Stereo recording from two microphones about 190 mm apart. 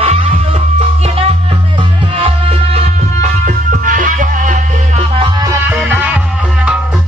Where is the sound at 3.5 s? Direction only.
45° right (ahead or behind).